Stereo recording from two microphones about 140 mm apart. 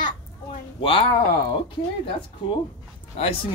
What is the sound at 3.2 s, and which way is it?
Speech, 45° left (ahead or behind).